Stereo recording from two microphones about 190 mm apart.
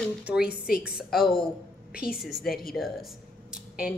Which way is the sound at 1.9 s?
50° left (ahead or behind).